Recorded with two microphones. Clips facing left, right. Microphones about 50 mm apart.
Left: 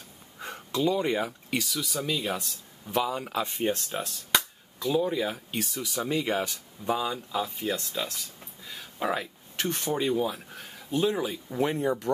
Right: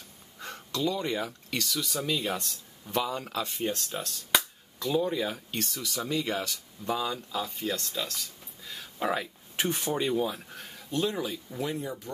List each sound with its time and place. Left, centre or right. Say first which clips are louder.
0.4 s speech: left 3 dB; centre
3.4 s speech: left 3 dB; left
4.3 s speech: even; centre
11.6 s speech: left 7 dB; left